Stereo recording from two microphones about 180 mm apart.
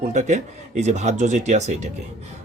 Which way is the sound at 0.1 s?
40° right (ahead or behind).